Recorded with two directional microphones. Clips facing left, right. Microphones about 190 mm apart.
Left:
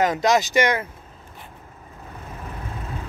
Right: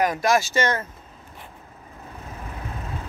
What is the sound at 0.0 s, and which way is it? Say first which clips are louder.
Speech: left 2 dB; 20° left (ahead or behind).